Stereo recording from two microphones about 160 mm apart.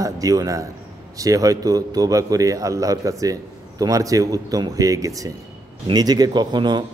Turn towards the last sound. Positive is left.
turn(degrees=-25)  # may be behind; listen again after turning